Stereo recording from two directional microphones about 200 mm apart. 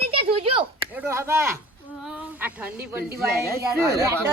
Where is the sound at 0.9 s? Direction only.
10° right (ahead or behind).